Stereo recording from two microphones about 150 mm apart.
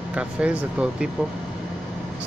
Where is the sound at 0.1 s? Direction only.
10° right (ahead or behind).